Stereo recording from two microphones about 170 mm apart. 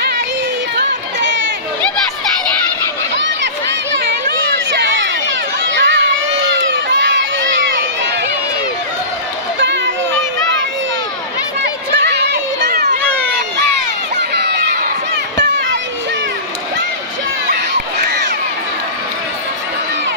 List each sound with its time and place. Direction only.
0.7 s a sound: 90° right
4.7 s a sound: 90° right
5.6 s crowd: 90° right
11.6 s run: 80° right
14.3 s crowd: 80° right
18.0 s crowd: 90° right